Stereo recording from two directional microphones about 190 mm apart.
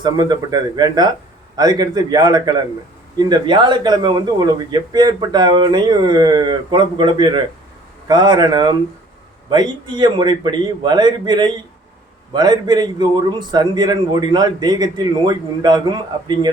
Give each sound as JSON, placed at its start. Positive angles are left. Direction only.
{"t": 0.0, "sound": "speech", "side_deg": -20}